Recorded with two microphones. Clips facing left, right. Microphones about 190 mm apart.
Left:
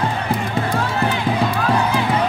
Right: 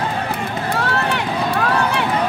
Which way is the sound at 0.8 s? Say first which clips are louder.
Even; 70° right (ahead or behind).